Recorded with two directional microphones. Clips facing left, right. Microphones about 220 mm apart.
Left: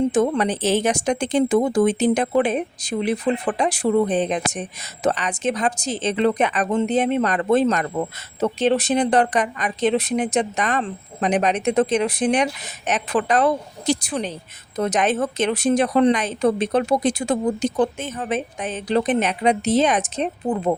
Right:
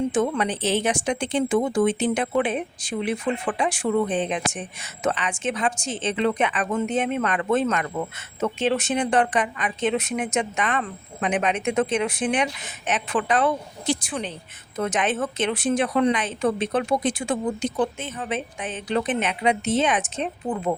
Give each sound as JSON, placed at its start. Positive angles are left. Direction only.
{"t": 0.1, "sound": "speech", "side_deg": 40}